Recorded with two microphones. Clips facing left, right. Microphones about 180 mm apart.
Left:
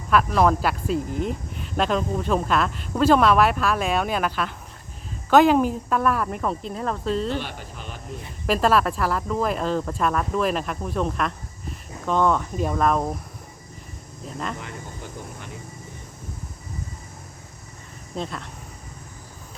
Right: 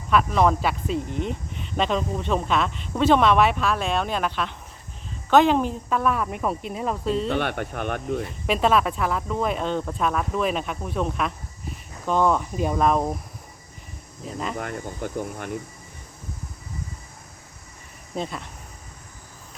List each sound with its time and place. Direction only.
0.1 s speech: centre (ahead or behind)
7.3 s speech: 60° right (ahead or behind)
8.4 s speech: centre (ahead or behind)
14.3 s speech: 5° right (ahead or behind)
14.6 s speech: 55° right (ahead or behind)
18.2 s speech: 5° right (ahead or behind)